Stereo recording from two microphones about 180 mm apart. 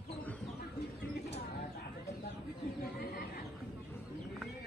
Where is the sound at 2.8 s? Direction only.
60° left (ahead or behind).